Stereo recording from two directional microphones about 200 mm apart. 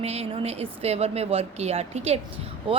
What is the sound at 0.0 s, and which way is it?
Speech, 30° right (ahead or behind).